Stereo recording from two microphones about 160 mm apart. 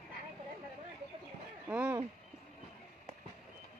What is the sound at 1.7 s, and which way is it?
Speech, 10° right (ahead or behind).